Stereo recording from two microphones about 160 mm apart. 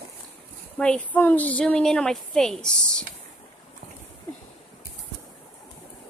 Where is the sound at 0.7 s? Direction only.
5° left (ahead or behind).